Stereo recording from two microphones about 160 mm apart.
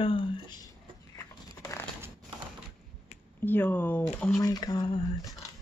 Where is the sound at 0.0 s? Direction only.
35° left (ahead or behind).